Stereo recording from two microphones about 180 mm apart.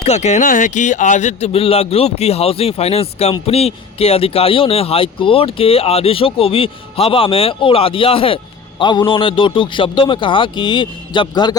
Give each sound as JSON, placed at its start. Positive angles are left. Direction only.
{"t": 0.0, "sound": "a man's voice", "side_deg": 35}